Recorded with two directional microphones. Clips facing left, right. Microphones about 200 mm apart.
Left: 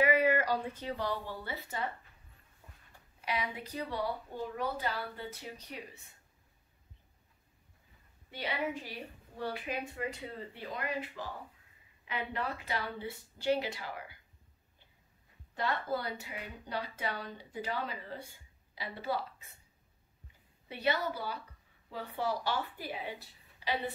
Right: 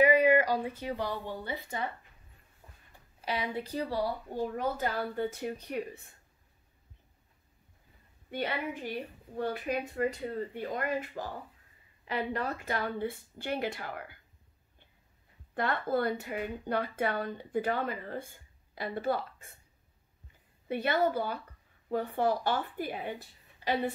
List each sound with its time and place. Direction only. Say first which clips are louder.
0.0 s a woman's voice: right 5 dB; 15° right (ahead or behind)
3.2 s a woman's voice: right 3 dB; 30° right (ahead or behind); by 6.1 s 55° right (ahead or behind)
8.3 s a woman's voice: right 2 dB; 55° right (ahead or behind)
15.5 s a woman's voice: right 4 dB; 55° right (ahead or behind)
20.6 s a woman's voice: right 5 dB; 50° right (ahead or behind)